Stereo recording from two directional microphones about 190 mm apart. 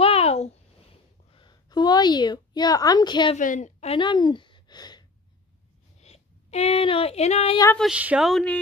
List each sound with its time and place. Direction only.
0.0 s a sound: 30° left (ahead or behind)
3.3 s speech: 40° left (ahead or behind); by 5.0 s 20° left (ahead or behind)
5.9 s speech: 35° left (ahead or behind)
7.7 s speech: 5° right (ahead or behind)